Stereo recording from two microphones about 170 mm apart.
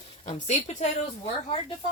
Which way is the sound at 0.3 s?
45° left (ahead or behind).